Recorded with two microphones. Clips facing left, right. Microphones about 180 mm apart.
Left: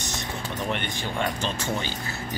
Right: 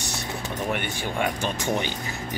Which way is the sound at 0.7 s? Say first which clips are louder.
Right 2 dB; 10° right (ahead or behind).